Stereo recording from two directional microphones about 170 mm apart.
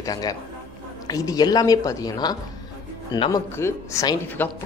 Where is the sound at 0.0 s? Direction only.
20° left (ahead or behind).